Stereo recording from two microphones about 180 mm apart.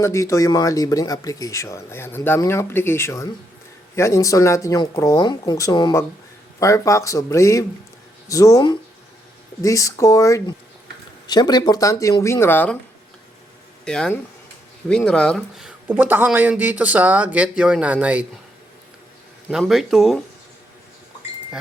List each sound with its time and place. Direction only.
0.0 s speech: 15° left (ahead or behind)
13.8 s a man's voice: 5° left (ahead or behind)
19.5 s speech: centre (ahead or behind)